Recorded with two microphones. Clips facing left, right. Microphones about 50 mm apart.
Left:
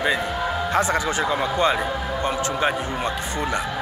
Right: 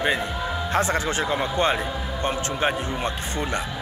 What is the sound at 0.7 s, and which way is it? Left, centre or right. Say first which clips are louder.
Speech: left 1 dB; left.